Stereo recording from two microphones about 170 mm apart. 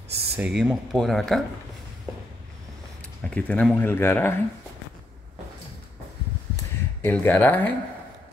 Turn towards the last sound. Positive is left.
turn(degrees=10)  # may be behind; listen again after turning